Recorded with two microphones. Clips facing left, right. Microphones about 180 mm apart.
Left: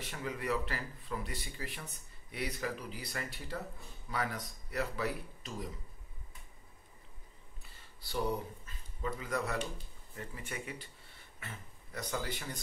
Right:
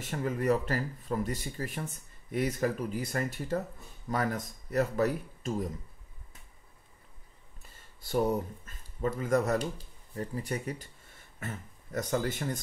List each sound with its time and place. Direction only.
0.0 s speech: 45° right (ahead or behind)
7.6 s a sound: 45° right (ahead or behind)
8.6 s speech: 45° right (ahead or behind)